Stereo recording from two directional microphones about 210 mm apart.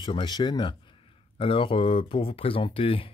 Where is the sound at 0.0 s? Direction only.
25° left (ahead or behind).